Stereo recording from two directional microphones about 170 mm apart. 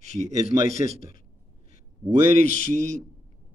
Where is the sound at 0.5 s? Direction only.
55° left (ahead or behind).